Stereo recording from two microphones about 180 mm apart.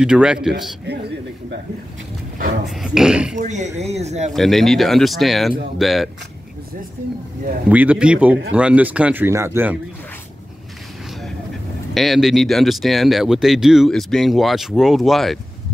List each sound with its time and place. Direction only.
0.0 s speech: 5° right (ahead or behind)
2.7 s speech: 5° right (ahead or behind)
3.3 s speech: 40° right (ahead or behind)
4.3 s speech: centre (ahead or behind)
7.7 s speech: 10° right (ahead or behind)
11.9 s speech: centre (ahead or behind)